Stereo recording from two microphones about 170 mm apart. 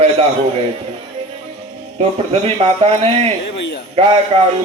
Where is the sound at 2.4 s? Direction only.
35° right (ahead or behind).